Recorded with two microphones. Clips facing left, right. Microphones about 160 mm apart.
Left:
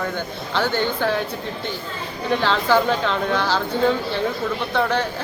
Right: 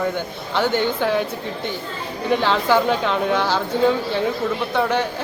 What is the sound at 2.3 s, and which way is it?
Speech, 15° right (ahead or behind).